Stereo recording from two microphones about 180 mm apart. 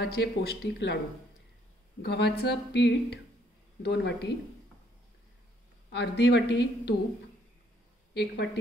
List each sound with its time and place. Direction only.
0.0 s speech: 65° left (ahead or behind)
2.0 s speech: 65° left (ahead or behind)
5.9 s speech: 75° left (ahead or behind)
6.5 s a woman's voice: 25° left (ahead or behind)
8.1 s speech: 65° left (ahead or behind)